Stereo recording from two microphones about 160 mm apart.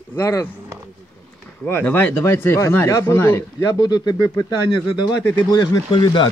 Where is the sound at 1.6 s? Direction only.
10° left (ahead or behind); by 6.3 s 30° left (ahead or behind).